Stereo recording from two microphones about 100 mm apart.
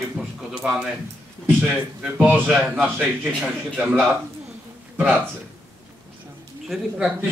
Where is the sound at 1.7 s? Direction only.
10° right (ahead or behind).